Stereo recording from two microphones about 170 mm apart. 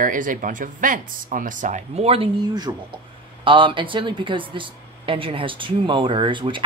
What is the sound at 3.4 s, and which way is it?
Speech, 30° right (ahead or behind).